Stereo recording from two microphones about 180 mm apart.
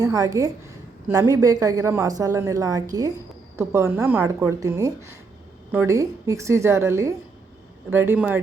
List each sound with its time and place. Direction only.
0.0 s a woman's voice: 20° right (ahead or behind)